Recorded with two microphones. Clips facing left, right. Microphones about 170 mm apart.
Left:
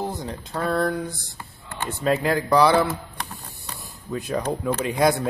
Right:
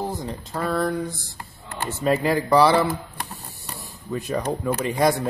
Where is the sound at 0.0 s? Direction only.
Centre (ahead or behind).